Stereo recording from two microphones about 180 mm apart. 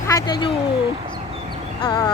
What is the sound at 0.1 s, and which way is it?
Speech, 20° left (ahead or behind).